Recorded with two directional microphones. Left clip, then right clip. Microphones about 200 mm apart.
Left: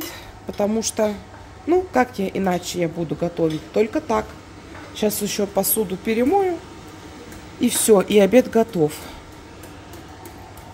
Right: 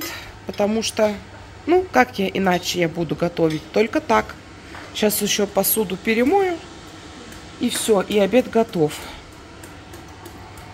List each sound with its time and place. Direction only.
0.1 s a sound: 10° left (ahead or behind)
1.7 s a woman's voice: 5° left (ahead or behind)
7.8 s a woman's voice: 25° left (ahead or behind); by 9.0 s 10° left (ahead or behind)